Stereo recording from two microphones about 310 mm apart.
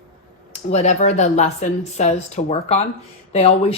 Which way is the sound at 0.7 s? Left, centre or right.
Left.